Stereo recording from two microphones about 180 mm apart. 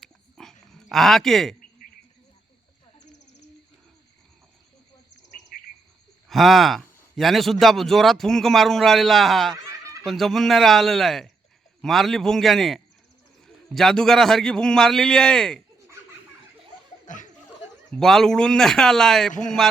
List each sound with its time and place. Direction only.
0.0 s dog: centre (ahead or behind)
0.6 s a man's voice: centre (ahead or behind)
6.2 s a man's voice: centre (ahead or behind)
9.6 s snicker: 20° right (ahead or behind)
10.1 s a man's voice: centre (ahead or behind)
17.1 s speech: 45° left (ahead or behind)
17.9 s a man's voice: centre (ahead or behind)